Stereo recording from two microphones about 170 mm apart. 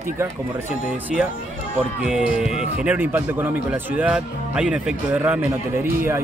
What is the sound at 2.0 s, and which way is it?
Speech, 5° right (ahead or behind).